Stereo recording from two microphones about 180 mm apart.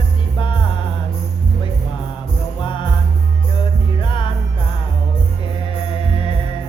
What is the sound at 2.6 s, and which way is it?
Music, 25° left (ahead or behind).